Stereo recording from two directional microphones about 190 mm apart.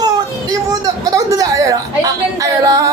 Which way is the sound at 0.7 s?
20° right (ahead or behind).